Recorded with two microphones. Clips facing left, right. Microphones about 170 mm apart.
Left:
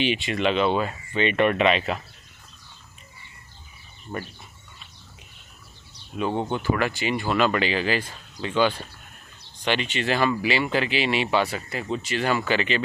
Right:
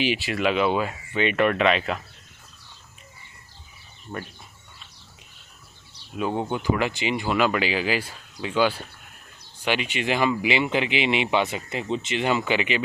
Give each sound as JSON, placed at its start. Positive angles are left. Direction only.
{"t": 0.0, "sound": "speech", "side_deg": -5}
{"t": 6.1, "sound": "speech", "side_deg": -5}